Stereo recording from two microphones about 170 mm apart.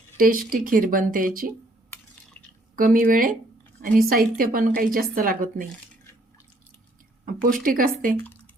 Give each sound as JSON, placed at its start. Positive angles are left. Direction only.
{"t": 0.2, "sound": "a woman's voice", "side_deg": -55}
{"t": 2.7, "sound": "a woman's voice", "side_deg": -55}
{"t": 7.4, "sound": "a woman's voice", "side_deg": -55}